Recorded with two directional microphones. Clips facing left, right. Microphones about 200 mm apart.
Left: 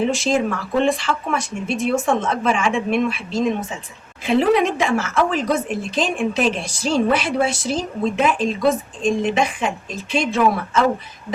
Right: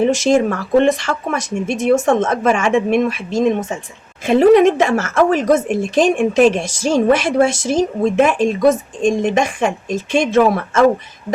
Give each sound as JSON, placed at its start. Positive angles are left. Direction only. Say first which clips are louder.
{"t": 0.3, "sound": "a woman's voice", "louder": "right 6 dB", "side_deg": -45}